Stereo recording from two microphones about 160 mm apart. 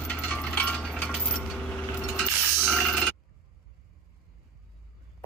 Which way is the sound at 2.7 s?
5° left (ahead or behind).